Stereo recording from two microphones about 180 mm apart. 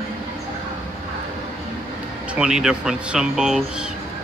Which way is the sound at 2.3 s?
5° right (ahead or behind).